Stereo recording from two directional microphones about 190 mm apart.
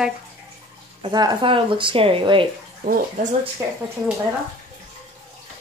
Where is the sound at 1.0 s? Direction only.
20° right (ahead or behind).